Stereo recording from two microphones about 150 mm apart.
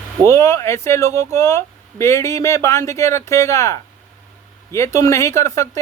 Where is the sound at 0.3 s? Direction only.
20° left (ahead or behind).